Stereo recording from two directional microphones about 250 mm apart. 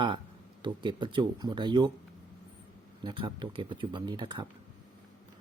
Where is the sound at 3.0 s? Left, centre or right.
Centre.